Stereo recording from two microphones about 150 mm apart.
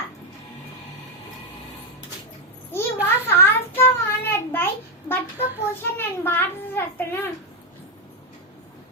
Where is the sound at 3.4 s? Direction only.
15° left (ahead or behind).